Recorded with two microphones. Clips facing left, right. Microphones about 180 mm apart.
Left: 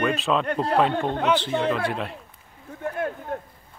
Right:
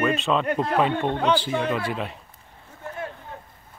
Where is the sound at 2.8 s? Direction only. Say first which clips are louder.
Left 6 dB; 60° left (ahead or behind).